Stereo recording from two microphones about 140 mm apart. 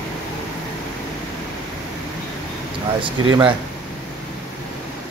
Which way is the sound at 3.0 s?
35° right (ahead or behind).